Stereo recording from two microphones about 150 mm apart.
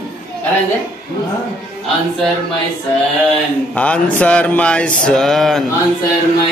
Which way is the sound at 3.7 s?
10° left (ahead or behind).